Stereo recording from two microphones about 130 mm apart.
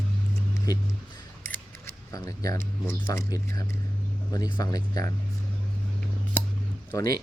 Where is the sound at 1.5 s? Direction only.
20° left (ahead or behind).